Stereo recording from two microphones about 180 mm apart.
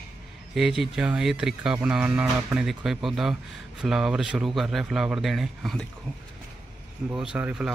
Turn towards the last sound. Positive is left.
turn(degrees=-5)  # may be behind; listen again after turning